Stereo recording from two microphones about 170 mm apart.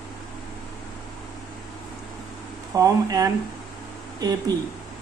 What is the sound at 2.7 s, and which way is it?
Speech, 20° right (ahead or behind).